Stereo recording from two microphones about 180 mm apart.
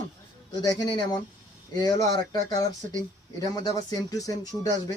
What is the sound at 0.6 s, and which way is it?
Speech, 20° left (ahead or behind).